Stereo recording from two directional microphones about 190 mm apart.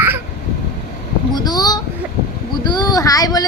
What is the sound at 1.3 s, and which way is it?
Child singing, 20° left (ahead or behind).